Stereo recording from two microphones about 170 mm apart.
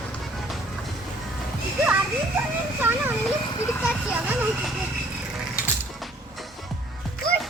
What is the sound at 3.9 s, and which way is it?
Vehicle, 10° right (ahead or behind).